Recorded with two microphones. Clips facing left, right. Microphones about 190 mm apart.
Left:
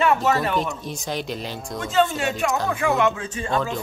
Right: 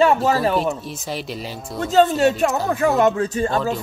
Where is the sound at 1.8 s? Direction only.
40° right (ahead or behind).